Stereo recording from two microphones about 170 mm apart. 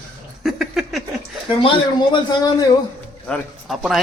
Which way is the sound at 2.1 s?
25° left (ahead or behind).